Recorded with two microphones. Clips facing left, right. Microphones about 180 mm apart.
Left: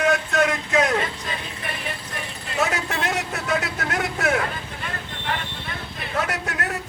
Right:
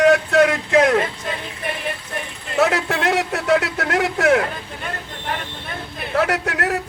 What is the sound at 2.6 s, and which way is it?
Speech, 65° right (ahead or behind).